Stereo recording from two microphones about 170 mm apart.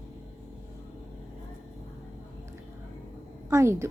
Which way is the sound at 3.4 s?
15° right (ahead or behind).